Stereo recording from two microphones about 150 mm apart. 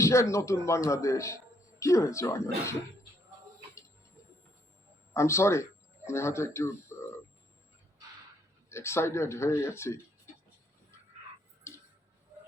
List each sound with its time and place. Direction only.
0.0 s speech: 20° left (ahead or behind)
5.1 s speech: 20° left (ahead or behind)
8.7 s speech: 15° left (ahead or behind)